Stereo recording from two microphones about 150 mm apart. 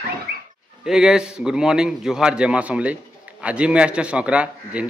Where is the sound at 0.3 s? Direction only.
90° right.